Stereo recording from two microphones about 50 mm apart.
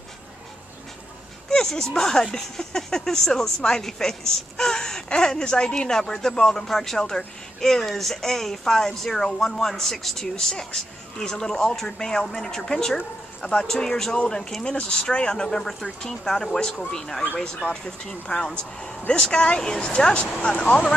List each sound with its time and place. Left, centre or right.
1.5 s speech: centre